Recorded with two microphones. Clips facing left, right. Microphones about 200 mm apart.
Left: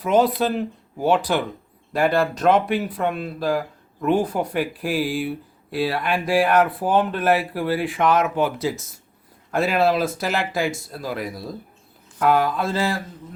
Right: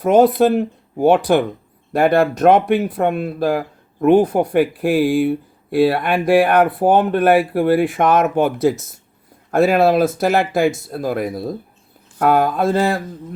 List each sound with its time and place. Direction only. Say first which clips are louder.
0.0 s speech: right 6 dB; 50° right (ahead or behind)